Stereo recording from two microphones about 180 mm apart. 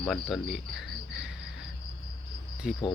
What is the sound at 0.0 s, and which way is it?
Cricket, centre (ahead or behind).